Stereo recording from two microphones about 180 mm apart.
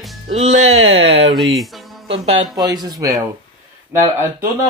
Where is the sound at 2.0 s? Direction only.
30° right (ahead or behind); by 4.1 s 15° right (ahead or behind).